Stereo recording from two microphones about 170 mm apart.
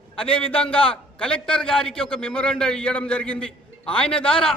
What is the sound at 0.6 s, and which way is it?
A man's voice, 5° left (ahead or behind).